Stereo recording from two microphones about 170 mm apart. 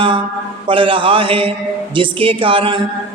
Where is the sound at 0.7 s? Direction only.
30° right (ahead or behind).